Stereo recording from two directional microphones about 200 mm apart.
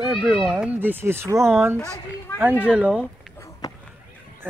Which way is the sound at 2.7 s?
Centre (ahead or behind).